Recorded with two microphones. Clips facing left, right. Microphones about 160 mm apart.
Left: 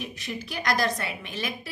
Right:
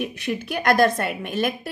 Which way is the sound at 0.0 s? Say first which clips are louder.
Right 8 dB; 60° right (ahead or behind).